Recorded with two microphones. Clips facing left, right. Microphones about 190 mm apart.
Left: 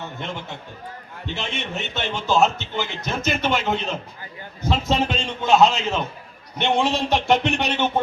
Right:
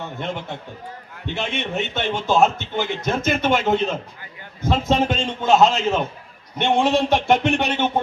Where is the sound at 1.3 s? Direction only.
55° right (ahead or behind).